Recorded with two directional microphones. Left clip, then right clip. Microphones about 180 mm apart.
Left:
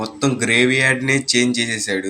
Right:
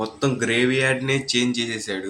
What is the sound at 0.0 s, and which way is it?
Speech, 10° left (ahead or behind).